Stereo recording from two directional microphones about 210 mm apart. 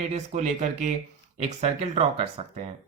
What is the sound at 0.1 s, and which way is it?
Speech, 35° right (ahead or behind).